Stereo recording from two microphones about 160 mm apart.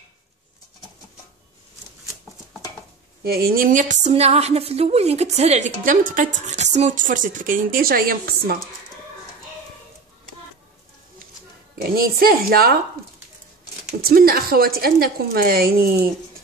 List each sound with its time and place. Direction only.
3.3 s a woman's voice: 70° right (ahead or behind)
11.8 s a woman's voice: 70° right (ahead or behind)
14.0 s a woman's voice: 70° right (ahead or behind)